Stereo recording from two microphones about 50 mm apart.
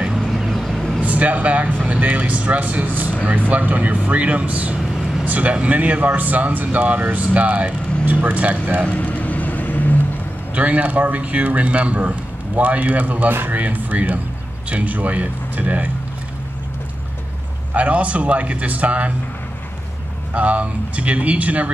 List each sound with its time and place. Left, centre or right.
0.4 s vehicle: centre
1.0 s a man's voice: right
8.8 s vehicle: left
10.5 s a man's voice: right
17.7 s a man's voice: right
20.3 s a man's voice: right